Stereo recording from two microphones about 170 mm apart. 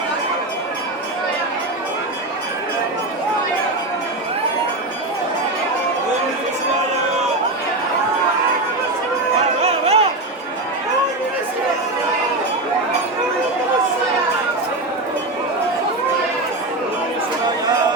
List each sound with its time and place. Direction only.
9.6 s music: 40° right (ahead or behind)